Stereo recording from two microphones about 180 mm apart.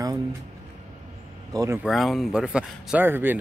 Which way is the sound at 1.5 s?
20° right (ahead or behind).